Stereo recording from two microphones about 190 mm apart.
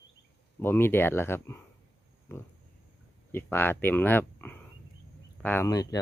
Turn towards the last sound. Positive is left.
turn(degrees=20)  # may be behind; listen again after turning